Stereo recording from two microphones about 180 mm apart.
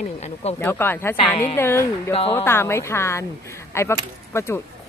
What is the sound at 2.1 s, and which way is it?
Speech, 30° left (ahead or behind).